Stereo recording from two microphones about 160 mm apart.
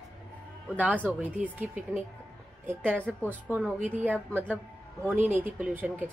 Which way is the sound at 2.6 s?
10° right (ahead or behind).